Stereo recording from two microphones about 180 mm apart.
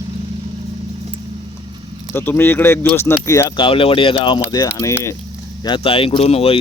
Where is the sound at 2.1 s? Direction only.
10° left (ahead or behind).